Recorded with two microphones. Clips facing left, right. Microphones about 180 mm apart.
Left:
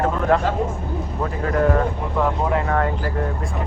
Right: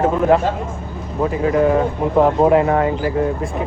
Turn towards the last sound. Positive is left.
turn(degrees=-10)  # may be behind; listen again after turning